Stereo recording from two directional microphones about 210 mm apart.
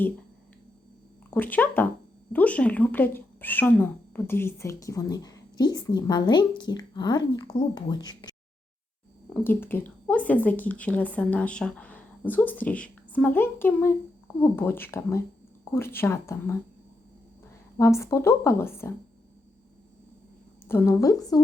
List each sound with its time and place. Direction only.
1.3 s a woman's voice: 10° left (ahead or behind)
9.3 s a woman's voice: 10° left (ahead or behind)
17.7 s a woman's voice: 15° left (ahead or behind)
20.7 s a woman's voice: 10° left (ahead or behind)